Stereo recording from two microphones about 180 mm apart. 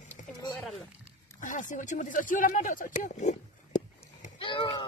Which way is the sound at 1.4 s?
45° left (ahead or behind).